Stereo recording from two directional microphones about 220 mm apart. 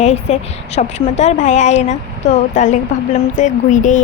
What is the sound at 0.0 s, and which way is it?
A woman's voice, 30° left (ahead or behind).